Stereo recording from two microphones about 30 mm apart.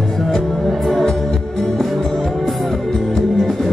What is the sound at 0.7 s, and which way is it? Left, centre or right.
Music, centre.